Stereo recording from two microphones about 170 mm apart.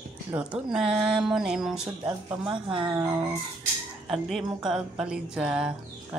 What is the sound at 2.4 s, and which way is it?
Speech, 30° right (ahead or behind).